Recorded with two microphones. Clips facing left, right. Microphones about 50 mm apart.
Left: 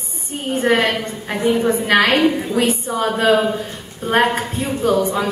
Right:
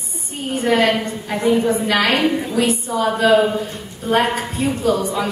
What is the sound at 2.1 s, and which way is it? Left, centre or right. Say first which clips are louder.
Speech: left 2 dB; centre.